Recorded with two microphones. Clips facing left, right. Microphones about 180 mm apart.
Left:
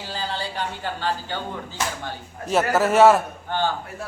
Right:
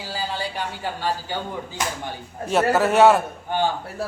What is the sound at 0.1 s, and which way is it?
Speech, 10° right (ahead or behind).